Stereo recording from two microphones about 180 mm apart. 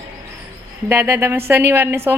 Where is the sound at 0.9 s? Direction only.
10° right (ahead or behind).